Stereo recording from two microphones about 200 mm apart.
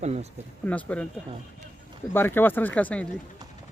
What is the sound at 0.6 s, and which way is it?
Speech, 5° left (ahead or behind).